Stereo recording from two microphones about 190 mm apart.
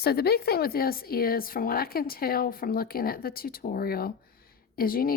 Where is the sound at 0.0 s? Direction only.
55° left (ahead or behind).